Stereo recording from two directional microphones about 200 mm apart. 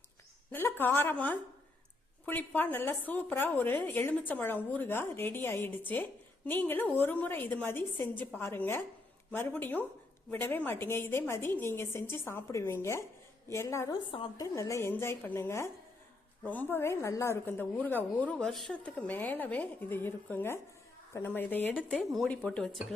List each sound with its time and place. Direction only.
0.5 s a woman's voice: 10° left (ahead or behind)